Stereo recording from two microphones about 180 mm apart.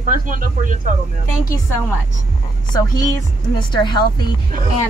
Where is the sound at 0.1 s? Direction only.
50° right (ahead or behind).